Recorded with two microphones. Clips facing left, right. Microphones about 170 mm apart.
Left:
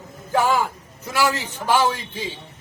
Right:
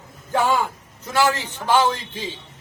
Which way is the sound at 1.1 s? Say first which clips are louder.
Right 2 dB; 10° left (ahead or behind).